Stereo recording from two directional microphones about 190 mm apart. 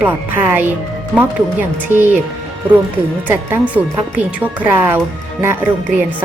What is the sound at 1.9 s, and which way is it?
Speech, 10° right (ahead or behind).